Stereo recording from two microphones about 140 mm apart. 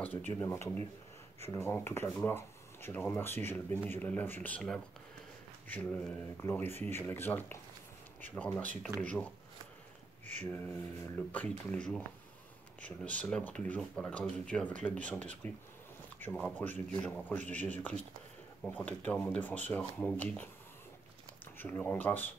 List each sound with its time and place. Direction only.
0.0 s speech: 10° left (ahead or behind)
11.1 s speech: 5° left (ahead or behind)
16.3 s speech: 10° left (ahead or behind)
21.5 s speech: 15° left (ahead or behind)